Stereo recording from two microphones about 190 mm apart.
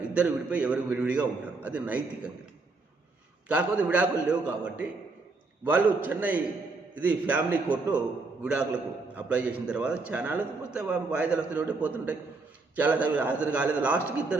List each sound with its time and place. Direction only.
0.0 s a man's voice: 5° right (ahead or behind)
3.5 s a man's voice: 5° right (ahead or behind)